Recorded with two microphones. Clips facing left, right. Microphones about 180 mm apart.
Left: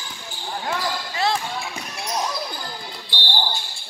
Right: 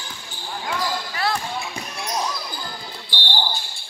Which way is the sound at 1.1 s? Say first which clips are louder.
Left 4 dB; 25° left (ahead or behind).